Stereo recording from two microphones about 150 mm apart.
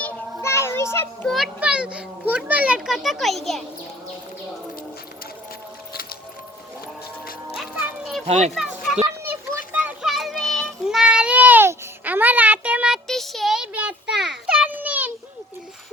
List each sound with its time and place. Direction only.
0.0 s child singing: 15° left (ahead or behind)
1.3 s a child's voice: 5° right (ahead or behind)
7.5 s children playing: 5° right (ahead or behind)
8.3 s speech: 45° right (ahead or behind)
8.5 s a sound: centre (ahead or behind)
9.2 s children playing: 15° right (ahead or behind)
9.7 s child singing: 5° right (ahead or behind)